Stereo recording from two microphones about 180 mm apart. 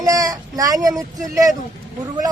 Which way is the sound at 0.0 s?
20° right (ahead or behind).